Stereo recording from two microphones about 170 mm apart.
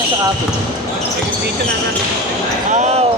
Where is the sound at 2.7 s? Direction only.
40° right (ahead or behind).